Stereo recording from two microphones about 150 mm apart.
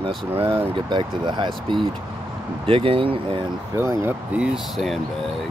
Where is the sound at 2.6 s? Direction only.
40° right (ahead or behind).